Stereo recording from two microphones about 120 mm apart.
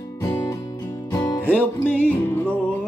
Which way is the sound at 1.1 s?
20° left (ahead or behind).